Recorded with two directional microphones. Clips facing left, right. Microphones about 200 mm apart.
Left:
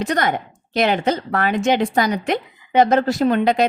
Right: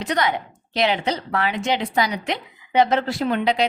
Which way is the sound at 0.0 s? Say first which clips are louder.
Left 2 dB; 50° left (ahead or behind).